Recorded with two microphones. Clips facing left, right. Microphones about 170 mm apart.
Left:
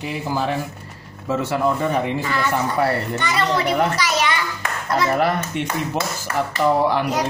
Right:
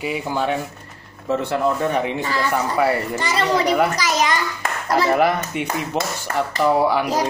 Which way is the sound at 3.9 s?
40° right (ahead or behind).